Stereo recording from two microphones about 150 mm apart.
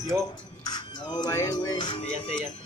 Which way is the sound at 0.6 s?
30° left (ahead or behind).